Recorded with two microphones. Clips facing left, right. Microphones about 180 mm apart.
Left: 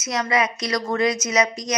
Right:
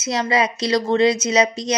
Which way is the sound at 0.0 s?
30° right (ahead or behind).